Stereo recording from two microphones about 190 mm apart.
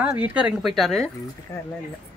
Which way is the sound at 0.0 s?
10° right (ahead or behind).